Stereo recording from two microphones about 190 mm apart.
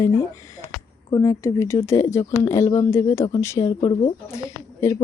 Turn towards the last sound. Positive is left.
turn(degrees=15)  # may be behind; listen again after turning